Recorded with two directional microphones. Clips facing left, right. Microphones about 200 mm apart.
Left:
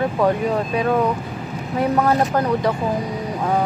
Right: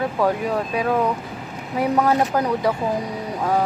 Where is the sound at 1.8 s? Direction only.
10° right (ahead or behind).